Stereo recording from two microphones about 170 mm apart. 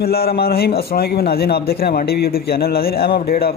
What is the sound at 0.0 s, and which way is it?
A man's voice, 65° left (ahead or behind).